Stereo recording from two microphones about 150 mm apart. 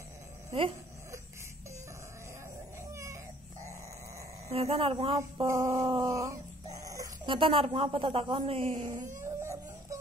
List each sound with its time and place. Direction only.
0.5 s a sound: 40° right (ahead or behind)
2.9 s a sound: 20° right (ahead or behind)
4.5 s speech: 40° right (ahead or behind)
5.4 s dog: 25° right (ahead or behind)
7.2 s speech: 35° right (ahead or behind)
9.2 s howl: 20° right (ahead or behind)